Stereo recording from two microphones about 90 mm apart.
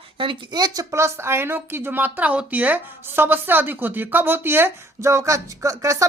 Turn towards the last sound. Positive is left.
turn(degrees=-35)  # may be behind; listen again after turning